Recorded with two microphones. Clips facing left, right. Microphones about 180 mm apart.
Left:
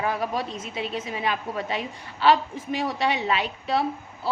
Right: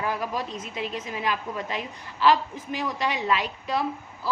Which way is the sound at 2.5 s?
25° left (ahead or behind).